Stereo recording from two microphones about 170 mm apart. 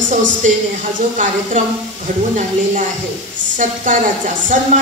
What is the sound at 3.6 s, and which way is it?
Speech, 50° right (ahead or behind).